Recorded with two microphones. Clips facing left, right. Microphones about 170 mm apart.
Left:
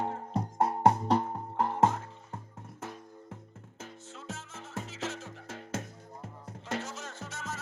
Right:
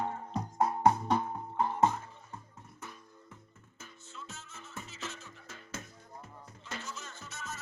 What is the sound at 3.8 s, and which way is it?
Music, 90° left.